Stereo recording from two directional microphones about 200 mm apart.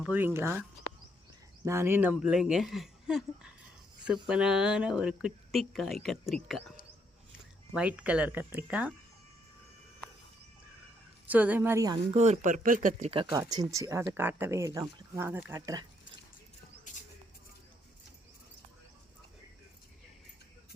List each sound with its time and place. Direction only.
0.0 s speech: 10° right (ahead or behind)
1.6 s speech: 10° right (ahead or behind)
7.7 s speech: 5° right (ahead or behind)
11.3 s speech: 10° right (ahead or behind)
12.1 s speech: 35° right (ahead or behind)
13.1 s speech: 25° right (ahead or behind)